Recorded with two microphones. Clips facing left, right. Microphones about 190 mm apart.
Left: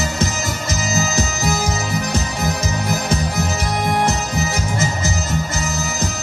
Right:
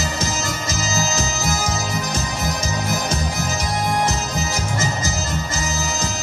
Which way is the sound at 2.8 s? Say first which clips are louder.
Left 4 dB; 60° left (ahead or behind).